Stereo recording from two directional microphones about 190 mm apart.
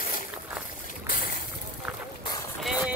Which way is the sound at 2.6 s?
5° right (ahead or behind).